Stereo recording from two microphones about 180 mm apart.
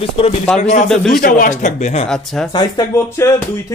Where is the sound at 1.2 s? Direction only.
50° left (ahead or behind).